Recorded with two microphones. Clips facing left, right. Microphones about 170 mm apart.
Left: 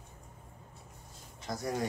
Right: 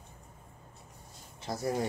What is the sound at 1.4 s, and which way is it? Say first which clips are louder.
Speech: right 2 dB; 30° right (ahead or behind).